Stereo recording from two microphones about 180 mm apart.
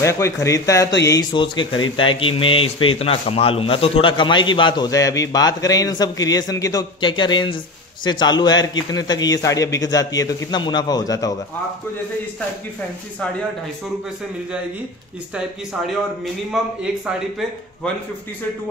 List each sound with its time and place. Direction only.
0.0 s speech: 15° left (ahead or behind)